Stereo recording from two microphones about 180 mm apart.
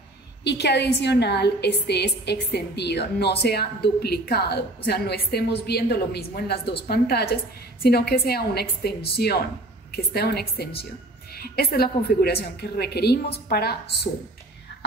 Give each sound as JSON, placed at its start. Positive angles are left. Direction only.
{"t": 0.4, "sound": "a woman's voice", "side_deg": 70}